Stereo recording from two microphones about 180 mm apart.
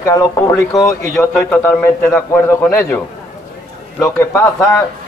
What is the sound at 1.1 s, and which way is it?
A man's voice, 5° left (ahead or behind).